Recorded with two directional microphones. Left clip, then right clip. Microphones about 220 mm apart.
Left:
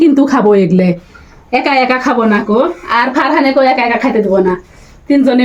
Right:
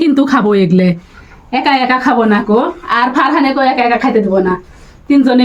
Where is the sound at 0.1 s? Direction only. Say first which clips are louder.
Left 2 dB; 45° right (ahead or behind).